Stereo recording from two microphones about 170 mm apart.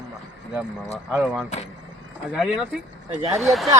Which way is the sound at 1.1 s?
5° right (ahead or behind).